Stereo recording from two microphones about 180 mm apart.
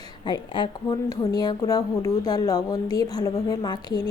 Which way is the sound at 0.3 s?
25° left (ahead or behind).